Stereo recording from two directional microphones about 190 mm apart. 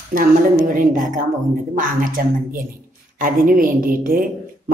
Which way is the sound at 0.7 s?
45° right (ahead or behind).